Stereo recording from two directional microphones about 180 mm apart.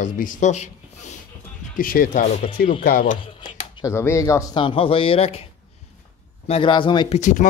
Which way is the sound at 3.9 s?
15° left (ahead or behind).